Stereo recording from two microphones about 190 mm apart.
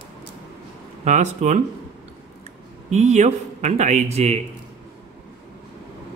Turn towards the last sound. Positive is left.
turn(degrees=-35)  # may be behind; listen again after turning